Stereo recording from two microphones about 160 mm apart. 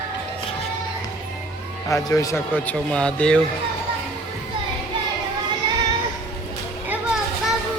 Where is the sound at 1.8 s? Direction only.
20° left (ahead or behind).